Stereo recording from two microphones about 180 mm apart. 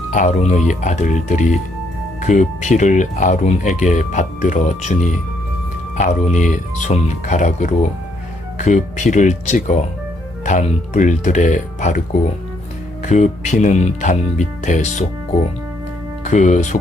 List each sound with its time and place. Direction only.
0.1 s speech: 40° left (ahead or behind)
13.1 s speech: 40° left (ahead or behind)
16.2 s speech: 40° left (ahead or behind)